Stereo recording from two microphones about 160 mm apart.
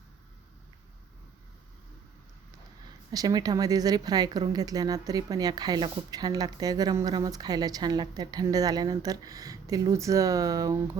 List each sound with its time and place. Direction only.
3.1 s speech: 25° right (ahead or behind)